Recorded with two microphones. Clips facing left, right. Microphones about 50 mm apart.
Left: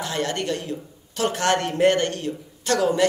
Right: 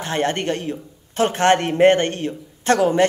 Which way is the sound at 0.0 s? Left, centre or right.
Right.